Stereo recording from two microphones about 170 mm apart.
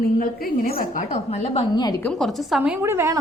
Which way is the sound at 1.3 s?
35° left (ahead or behind).